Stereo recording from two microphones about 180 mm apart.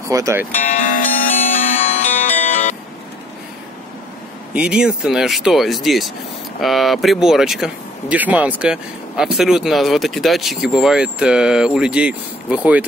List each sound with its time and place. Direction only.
0.1 s speech: 15° right (ahead or behind)
0.6 s music: 45° left (ahead or behind)
4.6 s speech: 5° right (ahead or behind)